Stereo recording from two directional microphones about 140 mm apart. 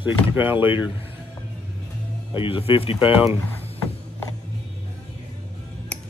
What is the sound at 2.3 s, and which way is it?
Speech, 40° left (ahead or behind).